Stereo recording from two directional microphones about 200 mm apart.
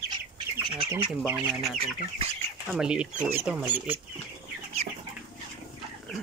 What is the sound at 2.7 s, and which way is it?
Speech, 5° right (ahead or behind).